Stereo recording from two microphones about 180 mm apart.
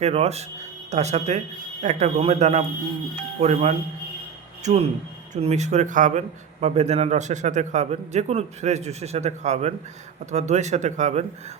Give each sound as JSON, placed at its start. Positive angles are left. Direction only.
{"t": 0.0, "sound": "speech", "side_deg": -35}